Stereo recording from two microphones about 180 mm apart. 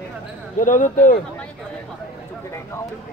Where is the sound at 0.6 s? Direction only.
45° left (ahead or behind).